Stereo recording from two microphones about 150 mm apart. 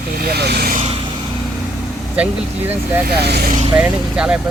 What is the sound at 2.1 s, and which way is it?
Speech, 10° right (ahead or behind).